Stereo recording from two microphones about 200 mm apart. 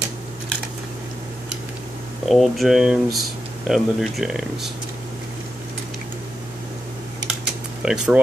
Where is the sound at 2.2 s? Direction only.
Centre (ahead or behind).